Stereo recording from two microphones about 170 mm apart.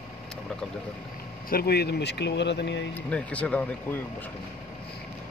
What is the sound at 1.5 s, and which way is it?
Speech, 65° left (ahead or behind).